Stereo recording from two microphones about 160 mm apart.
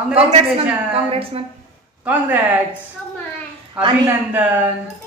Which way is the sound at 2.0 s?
10° right (ahead or behind).